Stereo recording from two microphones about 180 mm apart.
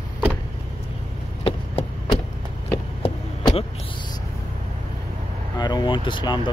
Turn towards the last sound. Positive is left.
turn(degrees=25)  # may be behind; listen again after turning